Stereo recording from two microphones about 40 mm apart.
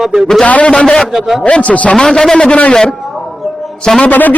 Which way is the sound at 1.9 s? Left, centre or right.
Centre.